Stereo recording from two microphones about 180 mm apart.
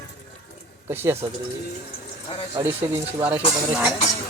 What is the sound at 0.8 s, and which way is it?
Speech, 15° right (ahead or behind).